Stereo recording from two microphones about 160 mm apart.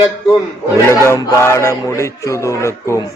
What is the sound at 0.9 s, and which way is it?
Speech, 15° left (ahead or behind).